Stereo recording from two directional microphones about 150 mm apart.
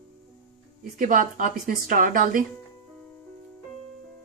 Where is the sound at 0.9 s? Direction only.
65° right (ahead or behind).